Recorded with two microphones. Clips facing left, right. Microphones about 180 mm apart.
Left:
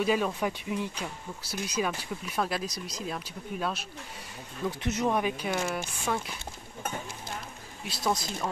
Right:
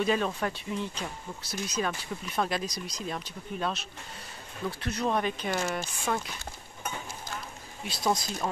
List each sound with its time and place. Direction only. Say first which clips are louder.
0.0 s speech: left 1 dB; 10° left (ahead or behind)
4.6 s speech: left 2 dB; 20° left (ahead or behind)
7.8 s speech: right 1 dB; centre (ahead or behind)